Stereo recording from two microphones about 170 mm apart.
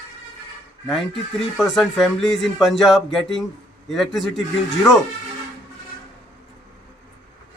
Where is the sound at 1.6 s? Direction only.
Centre (ahead or behind).